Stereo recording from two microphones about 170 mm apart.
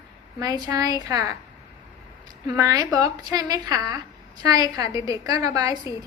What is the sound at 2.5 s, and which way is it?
A woman's voice, 20° right (ahead or behind).